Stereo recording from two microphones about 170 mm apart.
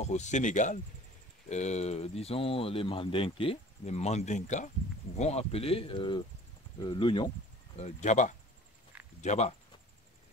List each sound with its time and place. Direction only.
0.0 s speech: 45° left (ahead or behind)
7.7 s speech: 40° left (ahead or behind)